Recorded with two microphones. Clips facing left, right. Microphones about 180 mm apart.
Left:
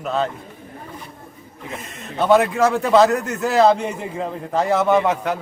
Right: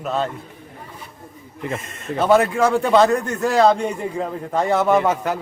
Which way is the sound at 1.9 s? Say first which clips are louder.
Even; centre (ahead or behind).